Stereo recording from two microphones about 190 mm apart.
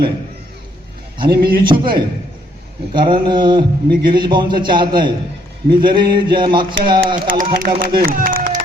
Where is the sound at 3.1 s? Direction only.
25° right (ahead or behind).